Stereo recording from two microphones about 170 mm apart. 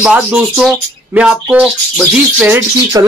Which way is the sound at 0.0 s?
5° right (ahead or behind).